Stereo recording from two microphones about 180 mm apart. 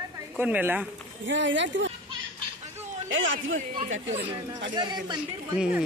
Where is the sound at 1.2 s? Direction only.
90° right.